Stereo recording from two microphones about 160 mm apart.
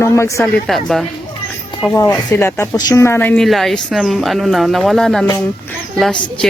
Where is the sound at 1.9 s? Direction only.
20° left (ahead or behind).